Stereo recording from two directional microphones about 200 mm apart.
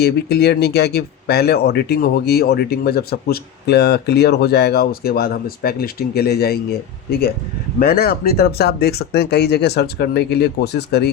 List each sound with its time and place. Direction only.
0.0 s speech: 55° left (ahead or behind)
7.8 s speech: 50° left (ahead or behind)